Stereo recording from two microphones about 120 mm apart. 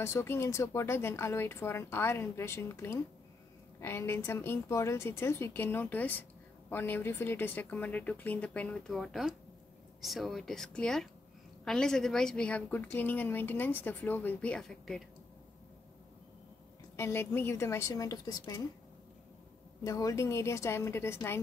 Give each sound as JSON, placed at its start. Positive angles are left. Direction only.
{"t": 0.0, "sound": "a woman's voice", "side_deg": 20}
{"t": 16.9, "sound": "speech", "side_deg": 20}
{"t": 19.8, "sound": "speech", "side_deg": 30}